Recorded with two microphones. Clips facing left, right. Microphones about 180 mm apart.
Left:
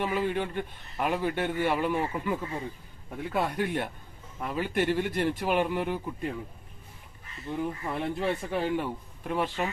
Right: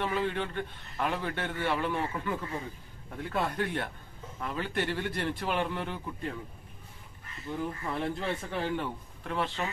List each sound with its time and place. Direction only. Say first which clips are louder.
0.0 s a man's voice: left 2 dB; 10° left (ahead or behind)
7.5 s a man's voice: left 2 dB; 20° left (ahead or behind)